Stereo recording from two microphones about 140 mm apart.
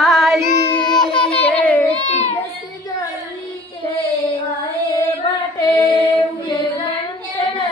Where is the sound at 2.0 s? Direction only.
55° left (ahead or behind).